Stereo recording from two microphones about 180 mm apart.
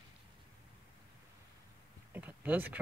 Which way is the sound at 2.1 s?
10° right (ahead or behind).